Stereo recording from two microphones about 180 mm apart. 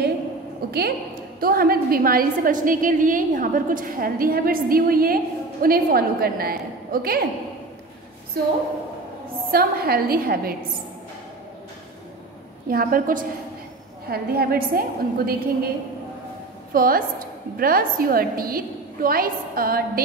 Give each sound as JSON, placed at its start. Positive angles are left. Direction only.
{"t": 0.7, "sound": "a woman's voice", "side_deg": -60}
{"t": 8.3, "sound": "a woman's voice", "side_deg": -60}
{"t": 12.6, "sound": "a woman's voice", "side_deg": -55}
{"t": 16.7, "sound": "a woman's voice", "side_deg": -55}